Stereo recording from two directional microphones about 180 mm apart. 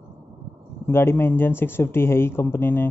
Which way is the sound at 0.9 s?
15° left (ahead or behind).